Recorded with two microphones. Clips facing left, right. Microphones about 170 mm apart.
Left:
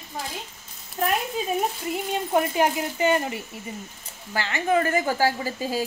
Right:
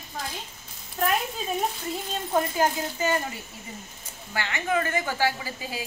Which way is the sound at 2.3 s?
15° left (ahead or behind).